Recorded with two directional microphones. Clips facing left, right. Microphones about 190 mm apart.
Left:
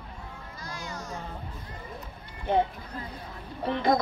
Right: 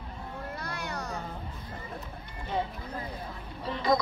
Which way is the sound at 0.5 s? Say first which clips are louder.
Even; 65° right (ahead or behind).